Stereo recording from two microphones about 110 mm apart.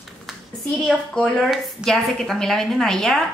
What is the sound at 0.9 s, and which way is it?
A woman's voice, 10° left (ahead or behind).